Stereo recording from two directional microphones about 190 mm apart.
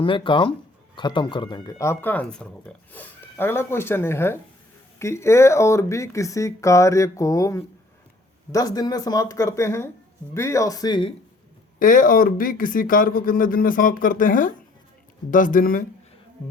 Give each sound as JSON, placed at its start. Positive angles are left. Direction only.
{"t": 0.0, "sound": "speech", "side_deg": 25}
{"t": 11.8, "sound": "speech", "side_deg": 45}